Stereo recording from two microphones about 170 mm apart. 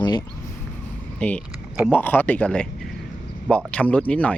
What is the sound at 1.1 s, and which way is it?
Speech, 5° left (ahead or behind).